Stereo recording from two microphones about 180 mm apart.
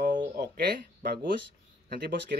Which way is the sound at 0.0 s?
45° right (ahead or behind).